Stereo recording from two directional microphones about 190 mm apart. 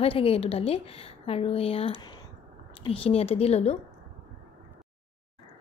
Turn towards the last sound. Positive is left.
turn(degrees=35)  # may be behind; listen again after turning